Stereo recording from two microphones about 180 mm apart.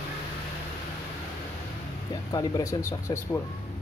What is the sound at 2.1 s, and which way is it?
Speech, 20° left (ahead or behind).